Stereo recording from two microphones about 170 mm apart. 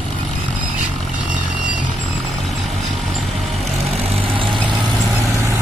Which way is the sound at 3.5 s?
35° right (ahead or behind).